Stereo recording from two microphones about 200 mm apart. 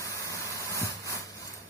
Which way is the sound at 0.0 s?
15° left (ahead or behind).